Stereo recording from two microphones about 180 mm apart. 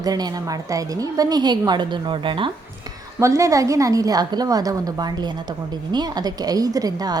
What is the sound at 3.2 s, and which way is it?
A woman's voice, 15° right (ahead or behind).